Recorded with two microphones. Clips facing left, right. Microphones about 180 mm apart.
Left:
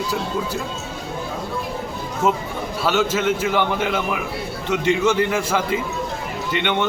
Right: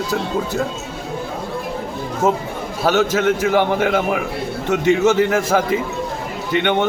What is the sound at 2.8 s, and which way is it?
A man's voice, 50° right (ahead or behind).